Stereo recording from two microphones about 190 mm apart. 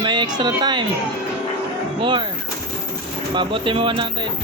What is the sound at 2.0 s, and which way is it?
Speech, 25° right (ahead or behind).